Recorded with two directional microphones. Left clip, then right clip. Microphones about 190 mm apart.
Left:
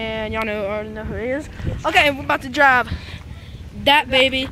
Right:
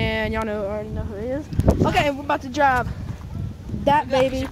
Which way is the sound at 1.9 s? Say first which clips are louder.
Left 5 dB; 5° left (ahead or behind).